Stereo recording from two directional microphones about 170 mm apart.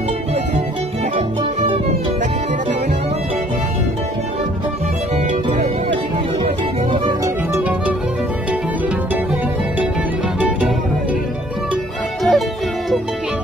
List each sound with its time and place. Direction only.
1.1 s music: 35° right (ahead or behind)
12.2 s music: centre (ahead or behind)